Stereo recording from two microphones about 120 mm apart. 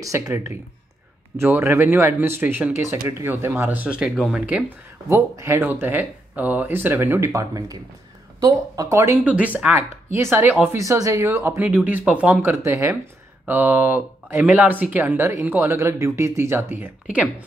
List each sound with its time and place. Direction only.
0.0 s speech: 25° right (ahead or behind)
9.2 s speech: 10° right (ahead or behind)
13.5 s speech: 15° right (ahead or behind)